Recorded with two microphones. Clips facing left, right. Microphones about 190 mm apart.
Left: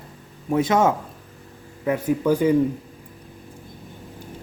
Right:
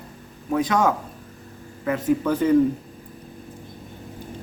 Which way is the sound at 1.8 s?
10° left (ahead or behind).